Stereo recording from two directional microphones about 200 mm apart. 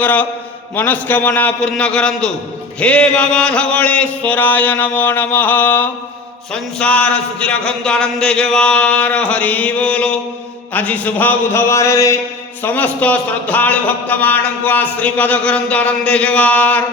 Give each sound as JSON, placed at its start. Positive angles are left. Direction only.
{"t": 0.0, "sound": "a man's voice", "side_deg": 10}